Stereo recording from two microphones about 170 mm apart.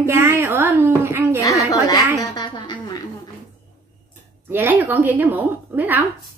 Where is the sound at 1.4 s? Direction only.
20° left (ahead or behind).